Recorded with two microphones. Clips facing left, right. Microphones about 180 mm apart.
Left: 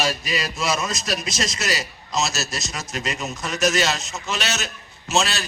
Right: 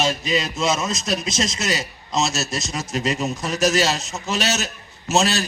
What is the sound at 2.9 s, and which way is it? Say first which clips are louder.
A man's voice: right 6 dB; 35° right (ahead or behind).